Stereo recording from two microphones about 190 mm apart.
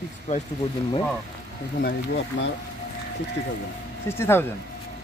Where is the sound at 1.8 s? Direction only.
55° left (ahead or behind).